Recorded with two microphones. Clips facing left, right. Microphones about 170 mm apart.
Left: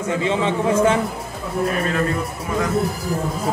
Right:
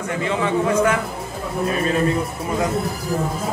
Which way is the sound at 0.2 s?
20° left (ahead or behind).